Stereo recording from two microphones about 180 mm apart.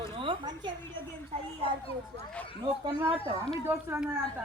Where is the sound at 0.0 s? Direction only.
30° right (ahead or behind).